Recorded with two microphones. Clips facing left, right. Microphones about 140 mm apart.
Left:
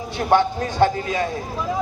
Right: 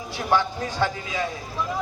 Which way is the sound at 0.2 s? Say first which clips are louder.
Left 5 dB; 55° left (ahead or behind).